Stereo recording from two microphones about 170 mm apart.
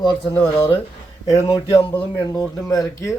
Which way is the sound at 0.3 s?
15° left (ahead or behind).